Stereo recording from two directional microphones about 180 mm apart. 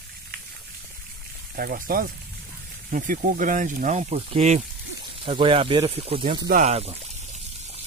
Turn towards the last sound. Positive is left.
turn(degrees=-35)  # may be behind; listen again after turning